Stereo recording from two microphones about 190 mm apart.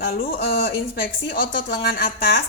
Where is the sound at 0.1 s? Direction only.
50° left (ahead or behind).